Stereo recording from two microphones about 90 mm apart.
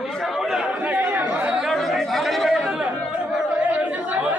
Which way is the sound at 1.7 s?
Centre (ahead or behind).